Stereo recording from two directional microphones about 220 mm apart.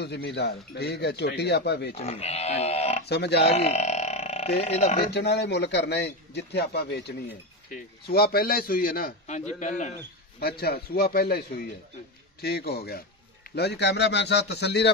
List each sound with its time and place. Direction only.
0.0 s a man's voice: 50° left (ahead or behind)
2.0 s speech: 25° left (ahead or behind)
3.1 s a man's voice: 50° left (ahead or behind)
3.4 s speech: 30° left (ahead or behind)
5.1 s a man's voice: 50° left (ahead or behind); by 9.9 s 35° left (ahead or behind)
10.6 s a man's voice: 45° left (ahead or behind)